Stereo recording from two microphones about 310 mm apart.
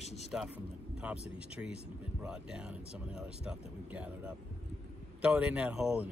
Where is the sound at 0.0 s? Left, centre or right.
Left.